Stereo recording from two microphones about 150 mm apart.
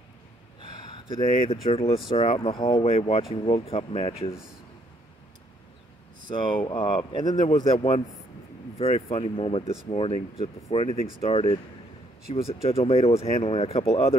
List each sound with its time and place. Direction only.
1.2 s speech: 45° left (ahead or behind)
2.7 s speech: 50° left (ahead or behind)
6.3 s speech: 35° left (ahead or behind)